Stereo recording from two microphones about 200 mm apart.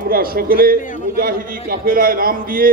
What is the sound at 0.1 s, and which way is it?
A man's voice, 45° right (ahead or behind).